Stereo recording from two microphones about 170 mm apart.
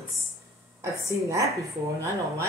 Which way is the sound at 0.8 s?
20° right (ahead or behind).